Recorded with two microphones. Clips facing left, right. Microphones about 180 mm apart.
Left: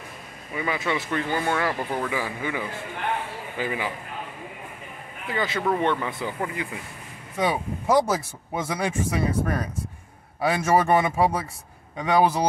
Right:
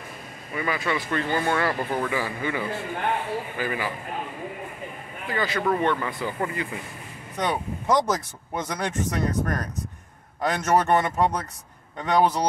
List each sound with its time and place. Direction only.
0.6 s speech: 20° left (ahead or behind)
1.2 s speech: 10° left (ahead or behind)
5.3 s speech: 20° left (ahead or behind)